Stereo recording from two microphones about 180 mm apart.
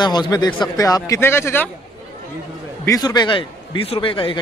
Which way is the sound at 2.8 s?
20° left (ahead or behind).